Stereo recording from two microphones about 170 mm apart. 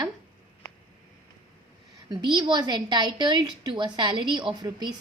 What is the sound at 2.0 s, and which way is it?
A woman's voice, 25° right (ahead or behind).